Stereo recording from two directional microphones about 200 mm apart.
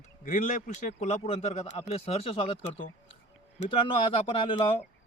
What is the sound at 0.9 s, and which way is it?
A man's voice, 35° left (ahead or behind).